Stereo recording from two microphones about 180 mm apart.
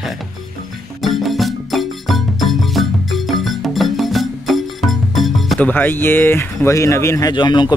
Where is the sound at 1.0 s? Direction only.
Centre (ahead or behind).